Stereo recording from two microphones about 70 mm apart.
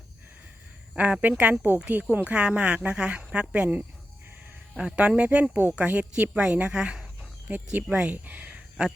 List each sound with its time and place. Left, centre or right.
0.9 s a woman's voice: centre